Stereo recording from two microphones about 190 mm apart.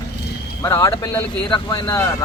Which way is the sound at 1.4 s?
25° left (ahead or behind).